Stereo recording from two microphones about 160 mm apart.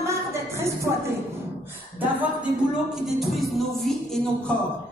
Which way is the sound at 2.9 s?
Centre (ahead or behind).